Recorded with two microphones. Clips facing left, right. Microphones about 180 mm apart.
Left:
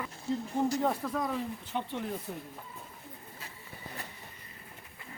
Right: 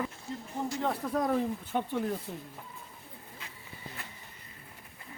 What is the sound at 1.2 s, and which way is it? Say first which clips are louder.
Speech: right 5 dB; 50° right (ahead or behind).